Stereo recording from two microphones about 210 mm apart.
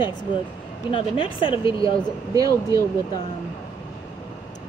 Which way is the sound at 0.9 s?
25° left (ahead or behind).